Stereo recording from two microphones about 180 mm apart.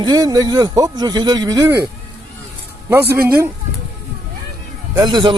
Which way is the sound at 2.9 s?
10° right (ahead or behind).